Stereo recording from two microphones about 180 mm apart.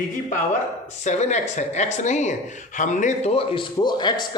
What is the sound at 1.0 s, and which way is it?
Speech, 40° left (ahead or behind).